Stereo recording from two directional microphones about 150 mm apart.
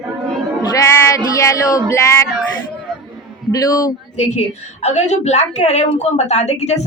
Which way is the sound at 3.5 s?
25° left (ahead or behind).